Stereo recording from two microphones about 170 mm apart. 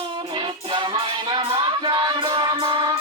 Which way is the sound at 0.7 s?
25° right (ahead or behind).